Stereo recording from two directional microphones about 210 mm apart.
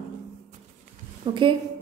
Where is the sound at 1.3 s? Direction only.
20° right (ahead or behind).